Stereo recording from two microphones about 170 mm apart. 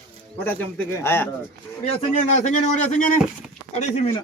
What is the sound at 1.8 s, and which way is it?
A man's voice, 40° left (ahead or behind).